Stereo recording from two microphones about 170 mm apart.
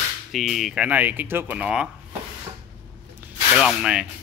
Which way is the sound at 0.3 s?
Centre (ahead or behind).